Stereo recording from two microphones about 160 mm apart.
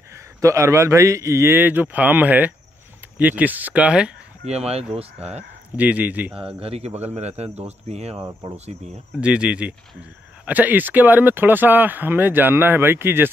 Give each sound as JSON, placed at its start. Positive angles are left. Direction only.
{"t": 0.1, "sound": "speech", "side_deg": -20}
{"t": 4.5, "sound": "speech", "side_deg": -40}
{"t": 5.8, "sound": "speech", "side_deg": -10}
{"t": 6.3, "sound": "speech", "side_deg": -35}
{"t": 6.9, "sound": "speech", "side_deg": -10}
{"t": 7.2, "sound": "speech", "side_deg": -45}
{"t": 8.2, "sound": "speech", "side_deg": -20}
{"t": 9.1, "sound": "speech", "side_deg": -5}